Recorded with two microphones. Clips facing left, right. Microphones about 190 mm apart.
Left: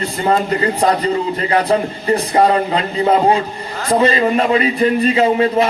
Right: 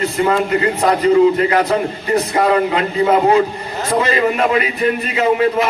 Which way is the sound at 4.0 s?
30° left (ahead or behind).